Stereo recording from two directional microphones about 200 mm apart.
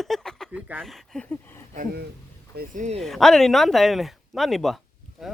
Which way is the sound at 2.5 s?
40° right (ahead or behind).